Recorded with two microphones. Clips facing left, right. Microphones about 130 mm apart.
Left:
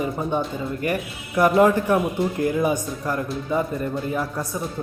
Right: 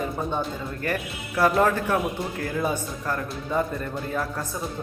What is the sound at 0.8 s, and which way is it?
A man's voice, 15° left (ahead or behind).